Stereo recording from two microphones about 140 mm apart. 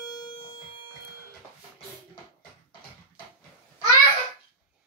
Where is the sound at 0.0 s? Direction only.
30° left (ahead or behind).